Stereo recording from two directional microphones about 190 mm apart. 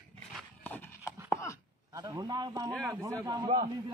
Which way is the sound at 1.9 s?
20° right (ahead or behind).